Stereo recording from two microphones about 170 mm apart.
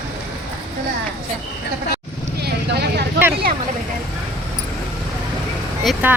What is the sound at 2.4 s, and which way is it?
Clip-clop, 70° right (ahead or behind).